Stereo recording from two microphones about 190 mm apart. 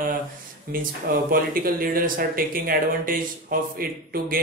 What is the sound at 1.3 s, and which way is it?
Speech, 50° right (ahead or behind).